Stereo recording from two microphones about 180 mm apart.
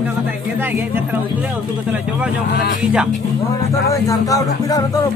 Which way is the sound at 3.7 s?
20° left (ahead or behind).